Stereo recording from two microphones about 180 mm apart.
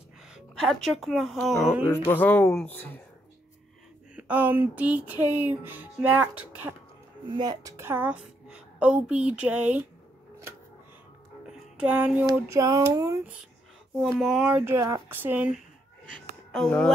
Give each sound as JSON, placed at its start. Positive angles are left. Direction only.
{"t": 0.3, "sound": "a woman's voice", "side_deg": 0}
{"t": 2.0, "sound": "speech", "side_deg": 10}
{"t": 4.1, "sound": "a woman's voice", "side_deg": -10}
{"t": 7.2, "sound": "a woman's voice", "side_deg": -25}
{"t": 11.8, "sound": "a woman's voice", "side_deg": -5}
{"t": 14.0, "sound": "a woman's voice", "side_deg": 0}
{"t": 16.5, "sound": "speech", "side_deg": 5}